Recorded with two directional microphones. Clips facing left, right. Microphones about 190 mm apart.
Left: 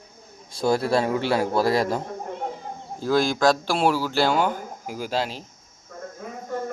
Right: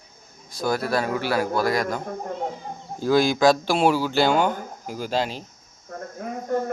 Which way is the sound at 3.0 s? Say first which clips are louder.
Right 2 dB; centre (ahead or behind).